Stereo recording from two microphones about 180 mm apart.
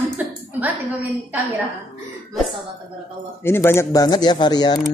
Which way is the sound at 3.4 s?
15° left (ahead or behind).